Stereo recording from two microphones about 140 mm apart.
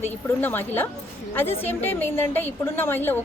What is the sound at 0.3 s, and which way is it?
A woman's voice, 15° left (ahead or behind).